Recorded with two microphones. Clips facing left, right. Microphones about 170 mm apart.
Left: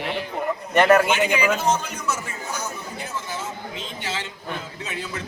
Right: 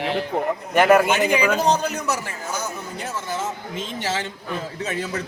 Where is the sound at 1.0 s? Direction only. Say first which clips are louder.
Right 2 dB; 40° right (ahead or behind).